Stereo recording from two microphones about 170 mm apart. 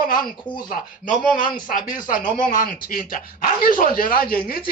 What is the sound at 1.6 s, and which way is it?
Speech, 50° left (ahead or behind).